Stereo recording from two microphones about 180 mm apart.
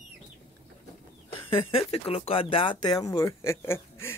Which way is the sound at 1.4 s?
30° left (ahead or behind).